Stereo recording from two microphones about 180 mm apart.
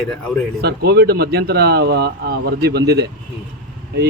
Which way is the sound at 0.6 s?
65° right (ahead or behind).